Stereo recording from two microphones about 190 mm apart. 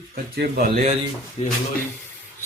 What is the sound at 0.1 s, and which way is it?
Speech, 55° right (ahead or behind).